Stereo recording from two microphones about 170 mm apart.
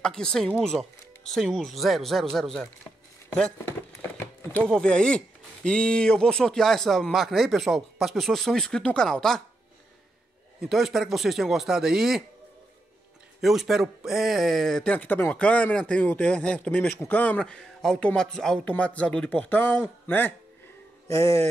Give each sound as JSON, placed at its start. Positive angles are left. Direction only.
{"t": 0.0, "sound": "speech", "side_deg": 5}
{"t": 10.6, "sound": "speech", "side_deg": 0}
{"t": 13.4, "sound": "speech", "side_deg": 0}